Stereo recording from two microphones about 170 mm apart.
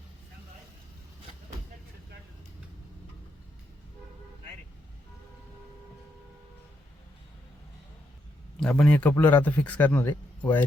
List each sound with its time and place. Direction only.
8.6 s a man's voice: 5° left (ahead or behind)